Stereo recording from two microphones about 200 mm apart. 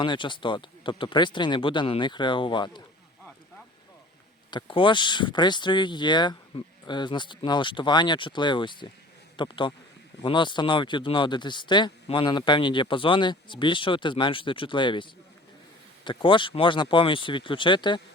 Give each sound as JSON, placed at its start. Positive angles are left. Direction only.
{"t": 0.0, "sound": "speech", "side_deg": 25}
{"t": 4.5, "sound": "speech", "side_deg": 25}